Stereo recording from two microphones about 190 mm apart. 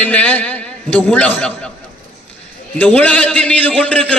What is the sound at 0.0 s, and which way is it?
A man's voice, 10° left (ahead or behind).